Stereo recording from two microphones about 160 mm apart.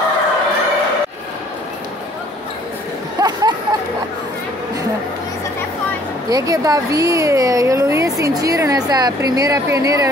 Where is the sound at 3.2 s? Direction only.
25° right (ahead or behind).